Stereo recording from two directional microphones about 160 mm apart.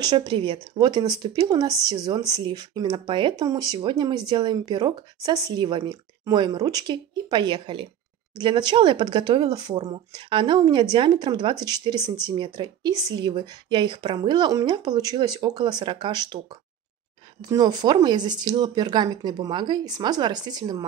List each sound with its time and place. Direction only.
0.0 s a woman's voice: 30° right (ahead or behind)